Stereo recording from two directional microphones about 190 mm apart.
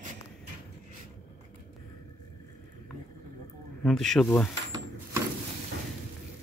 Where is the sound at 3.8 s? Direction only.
Centre (ahead or behind).